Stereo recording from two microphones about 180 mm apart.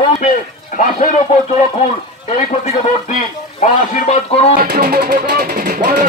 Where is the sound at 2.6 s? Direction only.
35° left (ahead or behind).